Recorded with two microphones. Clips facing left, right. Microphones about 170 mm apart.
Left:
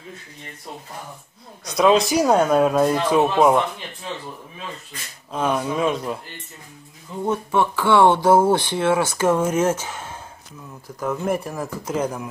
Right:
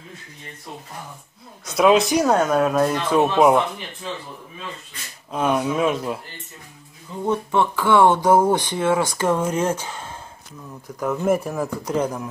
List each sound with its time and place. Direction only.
1.8 s speech: centre (ahead or behind)
3.2 s speech: centre (ahead or behind)
5.3 s speech: 5° right (ahead or behind)
7.8 s speech: 15° left (ahead or behind)
9.8 s a sound: 10° left (ahead or behind)
11.0 s speech: centre (ahead or behind)